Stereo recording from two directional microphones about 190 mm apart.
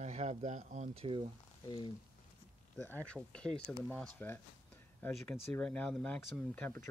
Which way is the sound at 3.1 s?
5° left (ahead or behind).